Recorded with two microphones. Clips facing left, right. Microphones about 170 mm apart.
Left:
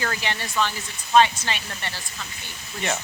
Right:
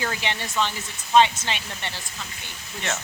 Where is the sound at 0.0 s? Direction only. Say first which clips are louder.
Even; 15° right (ahead or behind).